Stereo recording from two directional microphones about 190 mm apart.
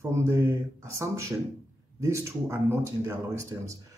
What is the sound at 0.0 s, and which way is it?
Speech, 15° right (ahead or behind).